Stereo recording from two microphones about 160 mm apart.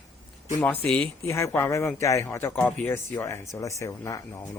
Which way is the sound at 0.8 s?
10° left (ahead or behind).